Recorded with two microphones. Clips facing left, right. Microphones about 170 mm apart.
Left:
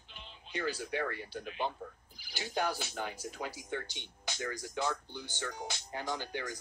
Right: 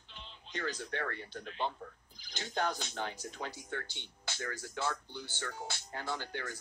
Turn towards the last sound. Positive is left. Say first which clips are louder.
# left 2 dB
turn(degrees=15)  # may be behind; listen again after turning